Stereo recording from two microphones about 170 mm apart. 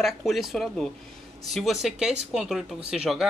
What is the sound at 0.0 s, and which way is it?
Speech, centre (ahead or behind).